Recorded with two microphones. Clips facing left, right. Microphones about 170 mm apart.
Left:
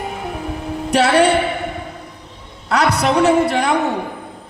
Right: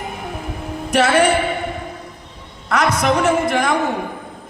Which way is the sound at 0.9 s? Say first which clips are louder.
Left 1 dB; 35° left (ahead or behind).